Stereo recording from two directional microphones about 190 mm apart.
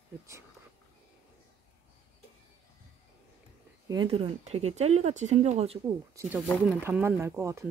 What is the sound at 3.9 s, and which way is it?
Speech, 25° right (ahead or behind).